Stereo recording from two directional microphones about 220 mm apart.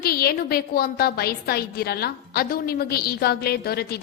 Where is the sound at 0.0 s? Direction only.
45° left (ahead or behind).